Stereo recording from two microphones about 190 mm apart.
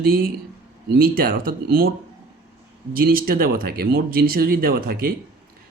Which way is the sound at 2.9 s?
50° right (ahead or behind).